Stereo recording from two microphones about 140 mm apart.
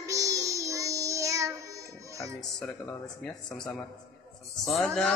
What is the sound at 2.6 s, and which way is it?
Music, 5° left (ahead or behind).